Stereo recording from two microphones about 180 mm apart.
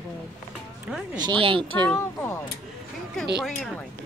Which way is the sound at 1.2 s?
25° right (ahead or behind).